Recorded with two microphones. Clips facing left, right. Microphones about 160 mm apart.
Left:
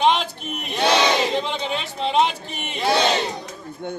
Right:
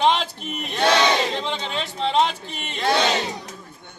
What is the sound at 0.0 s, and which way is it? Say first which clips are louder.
Battle cry: left 1 dB; centre (ahead or behind).